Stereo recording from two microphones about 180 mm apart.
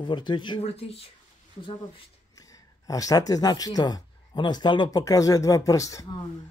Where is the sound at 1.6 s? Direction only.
25° left (ahead or behind).